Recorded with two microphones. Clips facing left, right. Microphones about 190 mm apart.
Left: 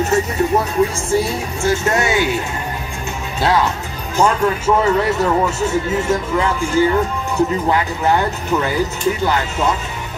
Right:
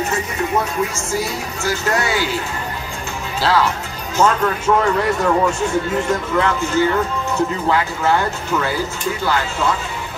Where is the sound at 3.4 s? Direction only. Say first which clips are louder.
Left 1 dB; 20° left (ahead or behind).